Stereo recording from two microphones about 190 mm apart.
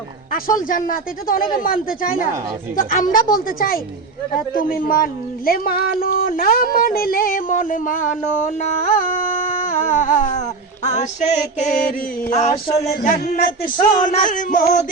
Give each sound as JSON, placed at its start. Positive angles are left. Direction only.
{"t": 0.3, "sound": "speech", "side_deg": 45}
{"t": 9.5, "sound": "music", "side_deg": 40}
{"t": 10.8, "sound": "mantra", "side_deg": 35}
{"t": 14.0, "sound": "speech", "side_deg": 45}